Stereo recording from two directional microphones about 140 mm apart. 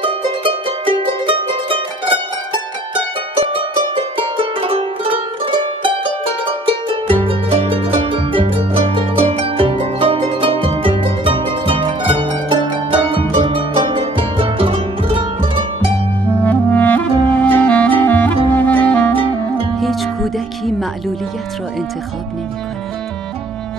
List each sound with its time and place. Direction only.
0.0 s music: 40° right (ahead or behind)
16.4 s clarinet: 10° left (ahead or behind)
19.1 s music: 40° right (ahead or behind)
19.8 s music: centre (ahead or behind)